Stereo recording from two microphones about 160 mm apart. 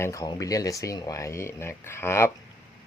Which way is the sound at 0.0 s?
20° left (ahead or behind).